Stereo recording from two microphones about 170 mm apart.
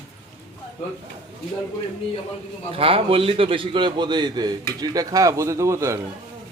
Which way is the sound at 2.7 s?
35° right (ahead or behind).